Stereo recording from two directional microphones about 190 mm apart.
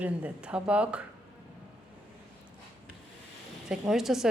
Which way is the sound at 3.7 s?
Centre (ahead or behind).